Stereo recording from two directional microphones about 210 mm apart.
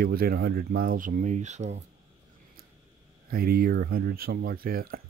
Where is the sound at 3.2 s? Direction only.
45° right (ahead or behind).